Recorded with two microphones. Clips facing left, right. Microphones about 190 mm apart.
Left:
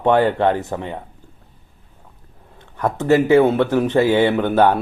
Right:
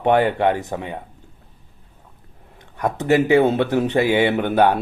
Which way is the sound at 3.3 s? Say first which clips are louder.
Left 2 dB; 15° right (ahead or behind).